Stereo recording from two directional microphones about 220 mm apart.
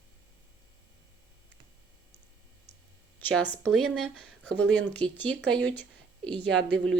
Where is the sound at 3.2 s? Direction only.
5° left (ahead or behind).